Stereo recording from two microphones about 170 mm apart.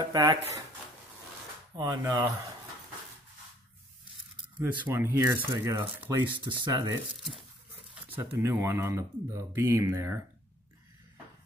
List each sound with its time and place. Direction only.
0.0 s speech: 25° right (ahead or behind)
1.8 s speech: 20° right (ahead or behind)
4.6 s speech: 10° right (ahead or behind)
6.2 s speech: 30° right (ahead or behind)
7.9 s speech: 15° right (ahead or behind)